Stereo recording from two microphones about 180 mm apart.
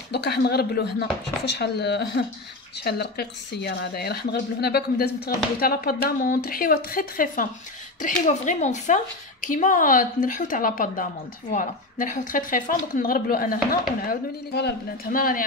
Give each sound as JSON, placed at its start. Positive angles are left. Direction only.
{"t": 0.1, "sound": "a woman's voice", "side_deg": 65}